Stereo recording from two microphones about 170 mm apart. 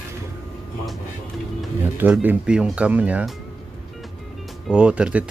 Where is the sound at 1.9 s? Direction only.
10° right (ahead or behind).